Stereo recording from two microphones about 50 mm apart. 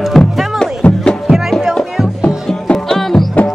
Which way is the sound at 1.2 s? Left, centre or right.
Centre.